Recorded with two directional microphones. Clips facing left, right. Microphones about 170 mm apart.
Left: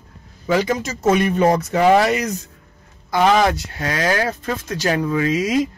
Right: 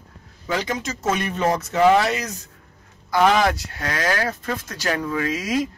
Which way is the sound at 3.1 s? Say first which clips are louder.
Left 2 dB; 25° left (ahead or behind).